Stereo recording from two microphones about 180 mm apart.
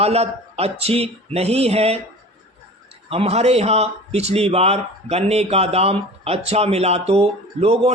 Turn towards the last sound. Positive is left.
turn(degrees=-35)  # may be behind; listen again after turning